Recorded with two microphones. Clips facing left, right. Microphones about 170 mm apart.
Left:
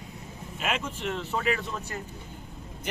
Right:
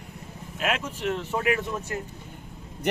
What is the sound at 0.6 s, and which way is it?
Speech, 5° right (ahead or behind).